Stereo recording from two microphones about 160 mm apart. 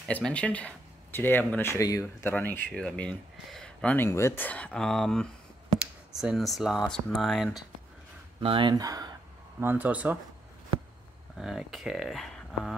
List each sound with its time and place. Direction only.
0.1 s speech: 5° left (ahead or behind)
8.4 s speech: 35° right (ahead or behind)
9.6 s speech: 10° right (ahead or behind)
11.3 s speech: 5° right (ahead or behind)